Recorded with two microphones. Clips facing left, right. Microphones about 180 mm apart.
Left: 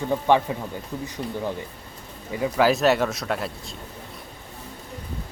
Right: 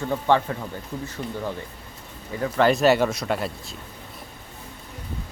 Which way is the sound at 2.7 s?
Centre (ahead or behind).